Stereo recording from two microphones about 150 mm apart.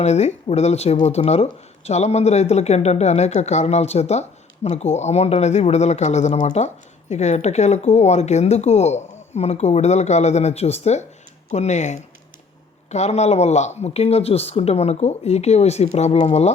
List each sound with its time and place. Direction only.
0.0 s speech: 50° left (ahead or behind)